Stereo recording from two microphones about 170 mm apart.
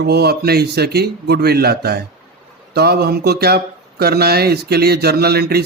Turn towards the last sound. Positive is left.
turn(degrees=-65)  # may be behind; listen again after turning